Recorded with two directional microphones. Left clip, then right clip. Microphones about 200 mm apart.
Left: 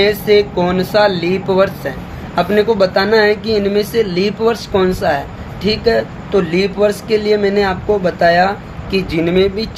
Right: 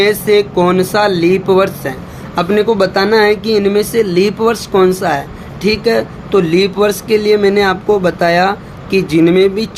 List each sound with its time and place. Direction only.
0.0 s speech: 40° right (ahead or behind)